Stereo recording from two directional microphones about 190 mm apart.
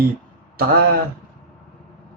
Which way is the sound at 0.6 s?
55° right (ahead or behind).